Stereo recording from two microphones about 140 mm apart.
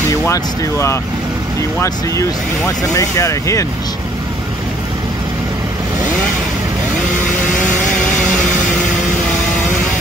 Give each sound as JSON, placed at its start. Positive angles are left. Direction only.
{"t": 0.1, "sound": "speech", "side_deg": 20}